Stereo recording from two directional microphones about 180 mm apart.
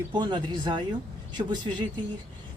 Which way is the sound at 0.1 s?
25° right (ahead or behind).